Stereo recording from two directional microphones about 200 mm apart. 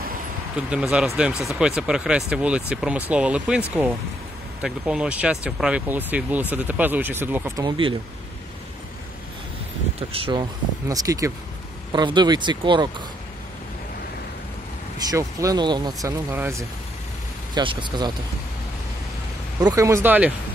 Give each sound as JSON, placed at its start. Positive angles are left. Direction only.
{"t": 0.6, "sound": "speech", "side_deg": -5}
{"t": 10.1, "sound": "speech", "side_deg": -25}
{"t": 15.0, "sound": "speech", "side_deg": -15}
{"t": 19.6, "sound": "speech", "side_deg": -15}